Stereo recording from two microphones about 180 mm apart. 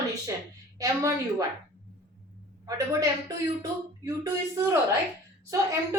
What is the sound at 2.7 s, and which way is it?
Speech, 15° right (ahead or behind).